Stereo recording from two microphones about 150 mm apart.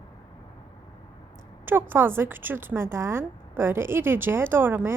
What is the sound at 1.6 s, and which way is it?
A woman's voice, 15° right (ahead or behind).